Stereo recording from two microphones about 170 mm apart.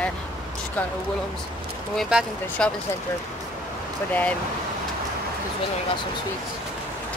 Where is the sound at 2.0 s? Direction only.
5° right (ahead or behind).